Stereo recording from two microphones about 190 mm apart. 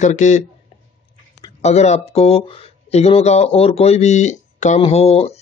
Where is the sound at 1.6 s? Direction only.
35° left (ahead or behind).